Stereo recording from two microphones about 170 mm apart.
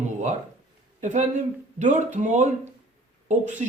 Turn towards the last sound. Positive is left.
turn(degrees=-45)  # may be behind; listen again after turning